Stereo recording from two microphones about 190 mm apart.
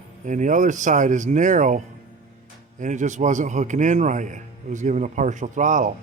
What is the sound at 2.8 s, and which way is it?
A man's voice, 40° right (ahead or behind).